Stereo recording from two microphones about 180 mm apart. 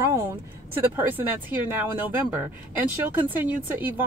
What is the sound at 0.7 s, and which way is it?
Speech, 10° right (ahead or behind).